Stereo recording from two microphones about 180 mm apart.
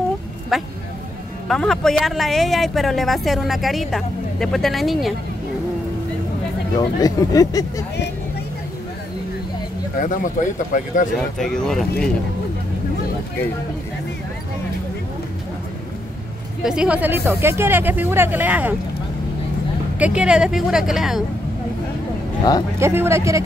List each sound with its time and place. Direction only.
0.5 s speech: centre (ahead or behind)
7.0 s speech: 20° left (ahead or behind)
9.9 s speech: 45° left (ahead or behind)
11.1 s speech: centre (ahead or behind)
16.6 s speech: 5° right (ahead or behind)
20.0 s speech: 5° right (ahead or behind)
22.8 s speech: 15° right (ahead or behind)